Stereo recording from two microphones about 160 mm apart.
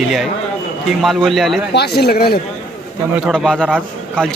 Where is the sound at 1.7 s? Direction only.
90° left.